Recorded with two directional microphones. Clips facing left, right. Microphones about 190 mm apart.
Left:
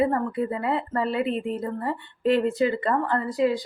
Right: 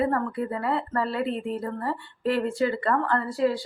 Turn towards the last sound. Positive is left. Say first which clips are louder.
# left 1 dB
turn(degrees=15)  # may be behind; listen again after turning